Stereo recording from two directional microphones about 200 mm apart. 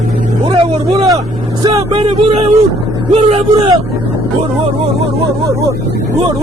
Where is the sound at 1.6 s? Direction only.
25° right (ahead or behind).